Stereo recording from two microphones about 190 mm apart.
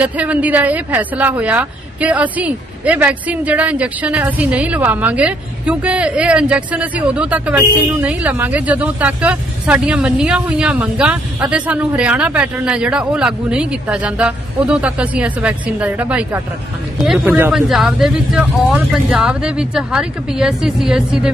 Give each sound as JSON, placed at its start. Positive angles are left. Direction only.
{"t": 0.0, "sound": "a woman's voice", "side_deg": -5}